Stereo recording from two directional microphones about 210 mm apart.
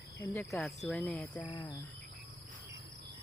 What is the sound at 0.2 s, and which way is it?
Speech, 5° left (ahead or behind).